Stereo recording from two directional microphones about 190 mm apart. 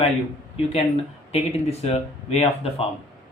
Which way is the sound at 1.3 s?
35° left (ahead or behind).